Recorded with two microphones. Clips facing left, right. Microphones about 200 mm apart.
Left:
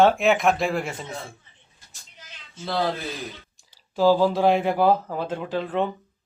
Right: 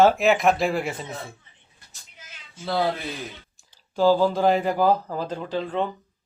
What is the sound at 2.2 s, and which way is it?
Cat, 5° right (ahead or behind).